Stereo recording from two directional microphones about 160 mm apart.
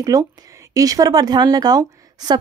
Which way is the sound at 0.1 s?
20° right (ahead or behind).